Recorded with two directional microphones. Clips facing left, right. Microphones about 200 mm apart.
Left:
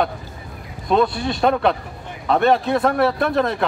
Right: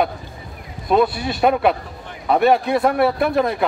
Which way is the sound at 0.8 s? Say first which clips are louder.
Right 1 dB; 10° right (ahead or behind).